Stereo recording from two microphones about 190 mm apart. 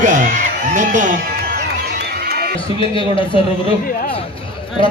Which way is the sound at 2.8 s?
25° left (ahead or behind).